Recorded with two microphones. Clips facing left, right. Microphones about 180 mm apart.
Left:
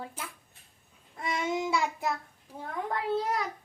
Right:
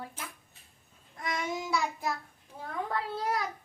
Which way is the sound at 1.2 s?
25° left (ahead or behind).